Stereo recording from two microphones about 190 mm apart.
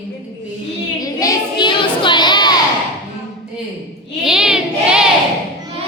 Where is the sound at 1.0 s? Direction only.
20° left (ahead or behind).